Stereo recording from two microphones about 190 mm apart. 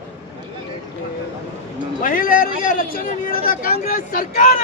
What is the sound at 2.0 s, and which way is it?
A man's voice, 45° left (ahead or behind).